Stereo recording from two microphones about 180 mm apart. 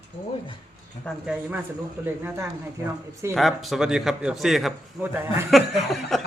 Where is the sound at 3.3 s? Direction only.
Centre (ahead or behind).